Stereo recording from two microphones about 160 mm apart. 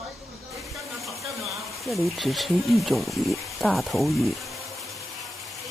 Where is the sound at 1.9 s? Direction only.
Centre (ahead or behind).